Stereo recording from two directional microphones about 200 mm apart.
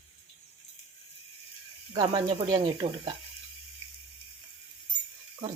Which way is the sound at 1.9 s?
20° right (ahead or behind).